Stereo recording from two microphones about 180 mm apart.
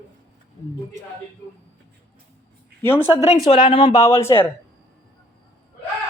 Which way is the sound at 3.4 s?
30° left (ahead or behind).